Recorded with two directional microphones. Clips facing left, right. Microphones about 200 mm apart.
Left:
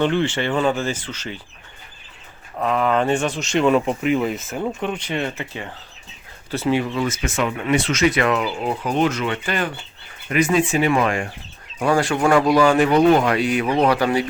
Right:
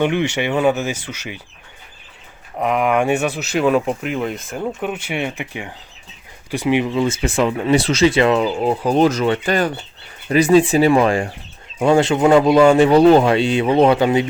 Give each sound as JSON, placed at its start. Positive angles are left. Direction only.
{"t": 0.0, "sound": "speech", "side_deg": -10}
{"t": 2.6, "sound": "speech", "side_deg": -15}